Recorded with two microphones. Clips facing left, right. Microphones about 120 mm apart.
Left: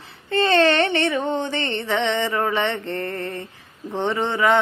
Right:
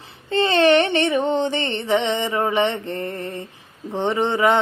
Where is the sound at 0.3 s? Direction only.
20° right (ahead or behind).